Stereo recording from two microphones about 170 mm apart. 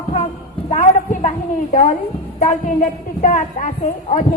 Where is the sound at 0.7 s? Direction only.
45° left (ahead or behind).